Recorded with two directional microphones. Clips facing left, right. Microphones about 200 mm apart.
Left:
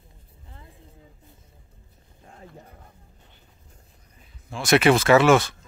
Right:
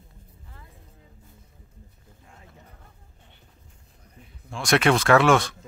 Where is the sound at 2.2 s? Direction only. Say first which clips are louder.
Left 7 dB; 40° left (ahead or behind).